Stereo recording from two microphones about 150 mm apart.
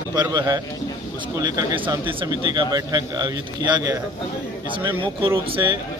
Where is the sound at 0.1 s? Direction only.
25° right (ahead or behind).